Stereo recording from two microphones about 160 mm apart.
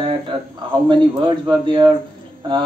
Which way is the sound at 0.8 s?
30° right (ahead or behind).